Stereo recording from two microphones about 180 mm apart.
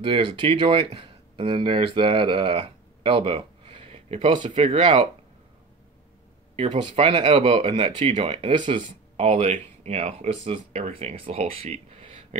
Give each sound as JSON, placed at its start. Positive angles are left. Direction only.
{"t": 0.0, "sound": "speech", "side_deg": -30}
{"t": 6.5, "sound": "speech", "side_deg": -35}